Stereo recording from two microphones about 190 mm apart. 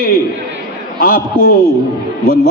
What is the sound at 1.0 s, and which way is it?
Speech, 50° left (ahead or behind).